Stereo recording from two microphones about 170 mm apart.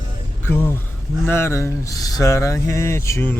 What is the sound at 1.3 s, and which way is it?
Mantra, 15° left (ahead or behind).